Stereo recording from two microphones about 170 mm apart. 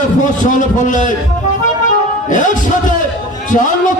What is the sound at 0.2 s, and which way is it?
Speech, 50° left (ahead or behind).